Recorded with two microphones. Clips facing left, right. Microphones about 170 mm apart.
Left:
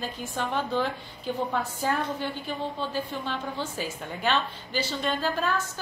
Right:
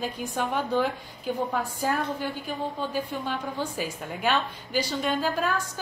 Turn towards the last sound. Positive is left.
turn(degrees=-10)  # may be behind; listen again after turning